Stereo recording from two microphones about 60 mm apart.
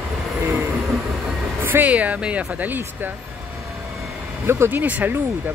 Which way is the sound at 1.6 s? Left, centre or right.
Right.